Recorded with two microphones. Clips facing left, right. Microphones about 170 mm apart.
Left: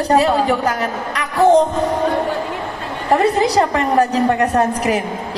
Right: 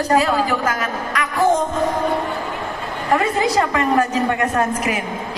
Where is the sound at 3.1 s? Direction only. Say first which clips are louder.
Left 3 dB; 35° left (ahead or behind).